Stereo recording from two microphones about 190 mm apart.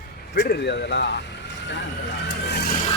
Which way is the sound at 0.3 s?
60° left (ahead or behind).